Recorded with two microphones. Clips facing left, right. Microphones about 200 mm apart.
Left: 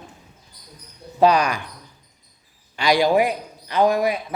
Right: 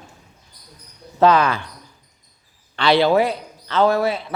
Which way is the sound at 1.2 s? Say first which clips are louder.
Right 1 dB; 15° left (ahead or behind).